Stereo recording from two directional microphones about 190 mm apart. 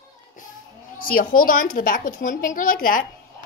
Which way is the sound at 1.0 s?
50° left (ahead or behind).